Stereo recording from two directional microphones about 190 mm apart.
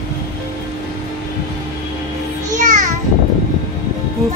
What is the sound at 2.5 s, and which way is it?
Music, 40° right (ahead or behind).